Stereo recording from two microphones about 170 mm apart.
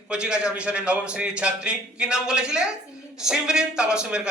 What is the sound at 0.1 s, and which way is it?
A man's voice, 5° right (ahead or behind).